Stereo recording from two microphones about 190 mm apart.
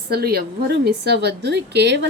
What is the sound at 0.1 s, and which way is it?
A woman's voice, 55° right (ahead or behind).